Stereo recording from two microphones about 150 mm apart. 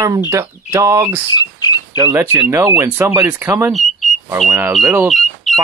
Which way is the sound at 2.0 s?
20° right (ahead or behind).